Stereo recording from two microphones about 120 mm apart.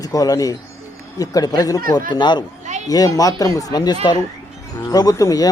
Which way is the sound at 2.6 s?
75° right (ahead or behind).